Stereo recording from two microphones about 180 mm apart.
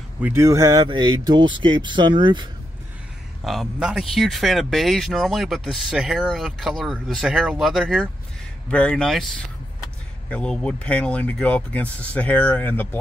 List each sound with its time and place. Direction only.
0.2 s speech: 15° right (ahead or behind)
3.4 s speech: centre (ahead or behind)